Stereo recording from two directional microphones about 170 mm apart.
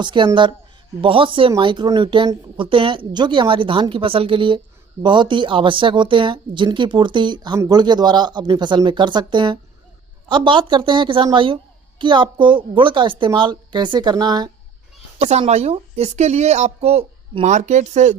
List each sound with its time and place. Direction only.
0.0 s speech: 25° right (ahead or behind)
15.2 s a woman's voice: 40° right (ahead or behind)